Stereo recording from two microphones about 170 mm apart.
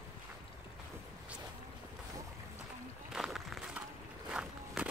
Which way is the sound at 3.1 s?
Centre (ahead or behind).